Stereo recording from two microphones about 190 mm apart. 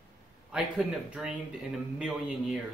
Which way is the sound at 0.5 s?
5° right (ahead or behind).